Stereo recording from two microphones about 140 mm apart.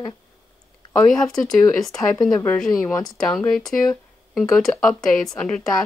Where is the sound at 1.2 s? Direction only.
5° left (ahead or behind).